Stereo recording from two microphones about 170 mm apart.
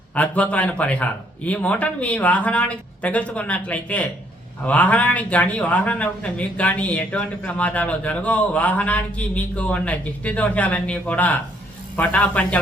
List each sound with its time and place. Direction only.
0.1 s speech: 10° left (ahead or behind)